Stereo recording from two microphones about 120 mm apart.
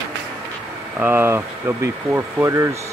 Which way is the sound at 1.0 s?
20° right (ahead or behind).